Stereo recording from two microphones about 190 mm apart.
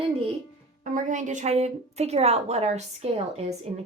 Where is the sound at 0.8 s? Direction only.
40° right (ahead or behind).